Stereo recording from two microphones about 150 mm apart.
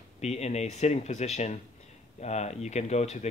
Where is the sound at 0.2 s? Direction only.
45° left (ahead or behind).